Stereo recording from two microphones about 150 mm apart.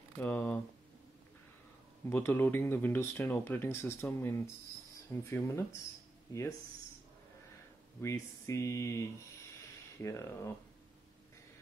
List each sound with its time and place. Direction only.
0.2 s speech: 10° left (ahead or behind)
2.0 s speech: 15° left (ahead or behind)
8.0 s speech: 20° left (ahead or behind)